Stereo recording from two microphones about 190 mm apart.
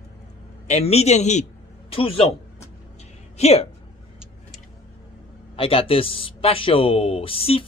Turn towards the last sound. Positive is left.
turn(degrees=30)  # may be behind; listen again after turning